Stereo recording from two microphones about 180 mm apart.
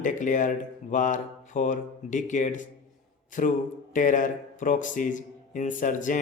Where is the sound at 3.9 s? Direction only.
45° left (ahead or behind).